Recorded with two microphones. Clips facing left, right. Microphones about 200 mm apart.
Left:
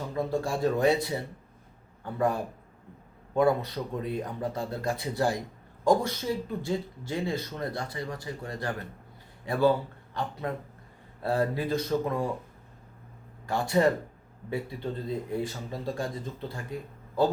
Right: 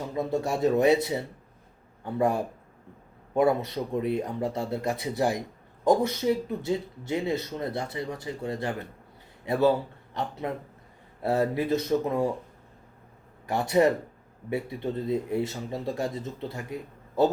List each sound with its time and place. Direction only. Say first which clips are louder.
0.1 s a man's voice: right 2 dB; 20° right (ahead or behind)
13.5 s speech: right 2 dB; 20° right (ahead or behind)